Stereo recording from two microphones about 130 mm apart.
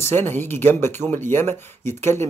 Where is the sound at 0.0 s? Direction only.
15° left (ahead or behind).